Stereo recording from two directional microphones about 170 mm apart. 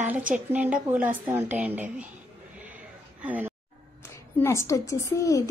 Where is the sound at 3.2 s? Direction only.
10° right (ahead or behind).